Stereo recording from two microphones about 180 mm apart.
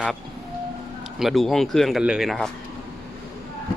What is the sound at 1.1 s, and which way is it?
Speech, centre (ahead or behind).